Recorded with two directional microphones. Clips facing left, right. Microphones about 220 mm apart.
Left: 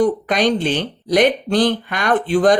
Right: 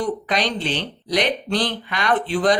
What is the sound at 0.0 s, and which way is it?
Speech, 50° left (ahead or behind).